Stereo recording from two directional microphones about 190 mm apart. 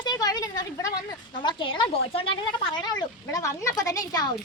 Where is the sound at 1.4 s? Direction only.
25° left (ahead or behind).